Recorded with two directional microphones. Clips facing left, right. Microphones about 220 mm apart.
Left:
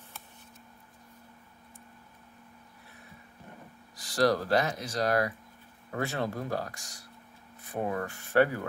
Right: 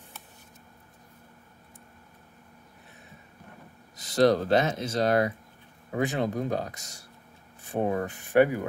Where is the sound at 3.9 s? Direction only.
20° right (ahead or behind).